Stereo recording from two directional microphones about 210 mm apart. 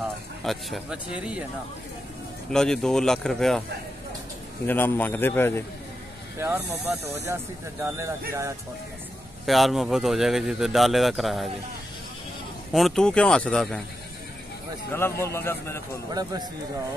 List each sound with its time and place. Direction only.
0.4 s speech: centre (ahead or behind)
2.5 s speech: 5° left (ahead or behind)
4.6 s a man's voice: 10° left (ahead or behind)
6.4 s speech: 15° right (ahead or behind)
9.5 s speech: centre (ahead or behind)
12.7 s speech: centre (ahead or behind)
14.9 s a man's voice: 10° left (ahead or behind)
16.1 s speech: 20° right (ahead or behind)